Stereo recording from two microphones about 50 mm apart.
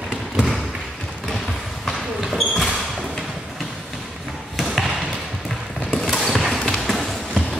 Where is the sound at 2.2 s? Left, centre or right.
Centre.